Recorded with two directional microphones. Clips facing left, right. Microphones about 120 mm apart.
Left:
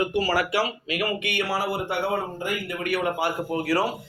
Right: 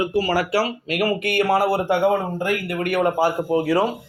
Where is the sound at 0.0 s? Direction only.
30° right (ahead or behind).